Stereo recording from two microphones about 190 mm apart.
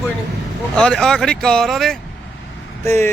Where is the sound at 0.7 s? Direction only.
5° left (ahead or behind).